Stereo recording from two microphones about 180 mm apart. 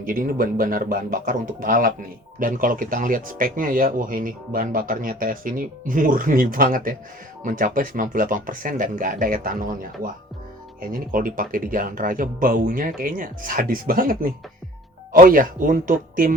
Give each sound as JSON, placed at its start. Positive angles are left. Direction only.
{"t": 0.0, "sound": "speech", "side_deg": -50}